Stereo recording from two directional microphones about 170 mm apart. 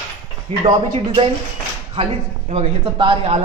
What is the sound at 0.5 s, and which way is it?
Speech, 40° right (ahead or behind).